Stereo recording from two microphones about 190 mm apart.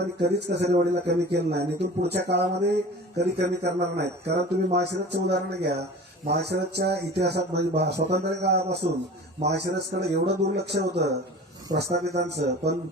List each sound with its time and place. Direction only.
0.0 s speech: 60° right (ahead or behind)